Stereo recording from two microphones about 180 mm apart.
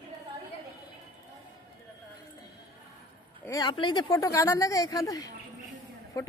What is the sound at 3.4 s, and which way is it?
A woman's voice, 20° left (ahead or behind).